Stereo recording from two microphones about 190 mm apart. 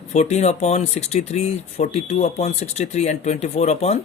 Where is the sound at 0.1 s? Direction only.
35° left (ahead or behind).